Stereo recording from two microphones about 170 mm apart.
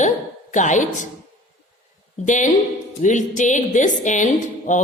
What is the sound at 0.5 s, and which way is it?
Speech, 45° left (ahead or behind).